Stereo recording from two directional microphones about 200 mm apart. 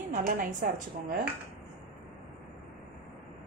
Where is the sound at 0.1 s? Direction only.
45° right (ahead or behind).